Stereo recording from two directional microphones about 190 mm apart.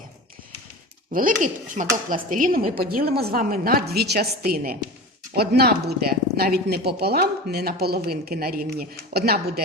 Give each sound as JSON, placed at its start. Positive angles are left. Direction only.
{"t": 1.1, "sound": "a woman's voice", "side_deg": -45}